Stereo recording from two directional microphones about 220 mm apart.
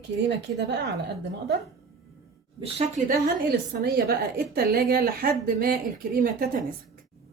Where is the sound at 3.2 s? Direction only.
45° right (ahead or behind).